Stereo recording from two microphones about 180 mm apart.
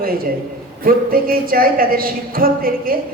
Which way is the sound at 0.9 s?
55° right (ahead or behind).